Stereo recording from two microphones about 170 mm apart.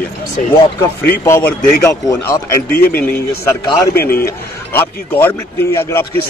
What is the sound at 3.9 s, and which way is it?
Speech, 65° left (ahead or behind).